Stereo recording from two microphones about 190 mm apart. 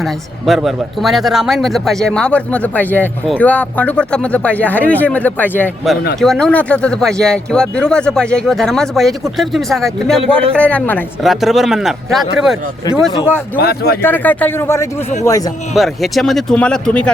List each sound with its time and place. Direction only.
0.0 s a man's voice: centre (ahead or behind)
13.6 s speech: 55° left (ahead or behind)
14.0 s speech: 10° left (ahead or behind)
15.7 s a man's voice: centre (ahead or behind)